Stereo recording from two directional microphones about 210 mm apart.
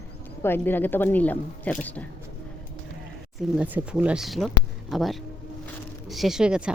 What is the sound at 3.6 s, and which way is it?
A woman's voice, 10° right (ahead or behind).